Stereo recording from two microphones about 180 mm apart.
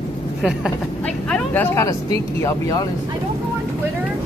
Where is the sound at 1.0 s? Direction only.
5° left (ahead or behind).